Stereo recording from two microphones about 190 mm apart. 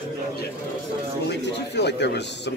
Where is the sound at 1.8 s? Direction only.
65° left (ahead or behind).